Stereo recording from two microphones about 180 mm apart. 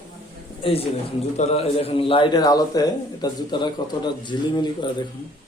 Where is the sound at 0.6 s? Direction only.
30° left (ahead or behind).